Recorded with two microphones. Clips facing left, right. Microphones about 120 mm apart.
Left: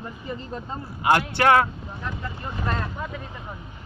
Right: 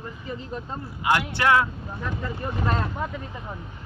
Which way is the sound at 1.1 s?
50° left (ahead or behind).